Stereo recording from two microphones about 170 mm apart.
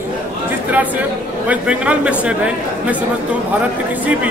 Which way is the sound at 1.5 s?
5° right (ahead or behind).